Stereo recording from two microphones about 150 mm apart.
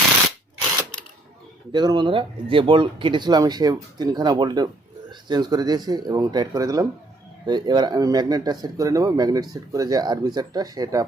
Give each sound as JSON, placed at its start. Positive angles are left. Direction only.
{"t": 1.7, "sound": "speech", "side_deg": -30}